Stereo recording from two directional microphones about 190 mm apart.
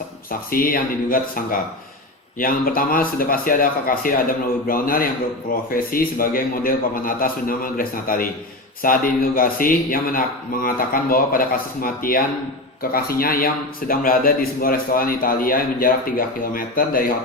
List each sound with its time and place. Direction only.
0.3 s a man's voice: 50° left (ahead or behind)